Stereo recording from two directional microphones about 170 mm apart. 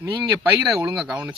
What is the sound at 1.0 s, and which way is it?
Speech, 5° right (ahead or behind).